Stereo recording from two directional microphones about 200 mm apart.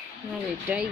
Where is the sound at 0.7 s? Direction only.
10° right (ahead or behind).